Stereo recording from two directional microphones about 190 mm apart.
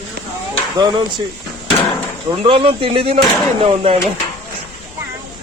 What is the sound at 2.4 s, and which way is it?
Speech, 30° right (ahead or behind).